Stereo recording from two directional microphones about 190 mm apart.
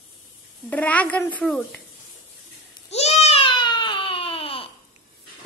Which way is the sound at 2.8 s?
35° left (ahead or behind).